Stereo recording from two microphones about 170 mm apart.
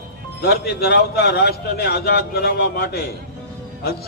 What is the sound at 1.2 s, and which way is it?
A man's voice, 75° left (ahead or behind).